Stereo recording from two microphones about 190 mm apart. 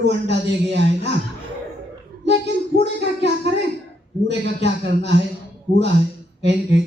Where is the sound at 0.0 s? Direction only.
65° right (ahead or behind).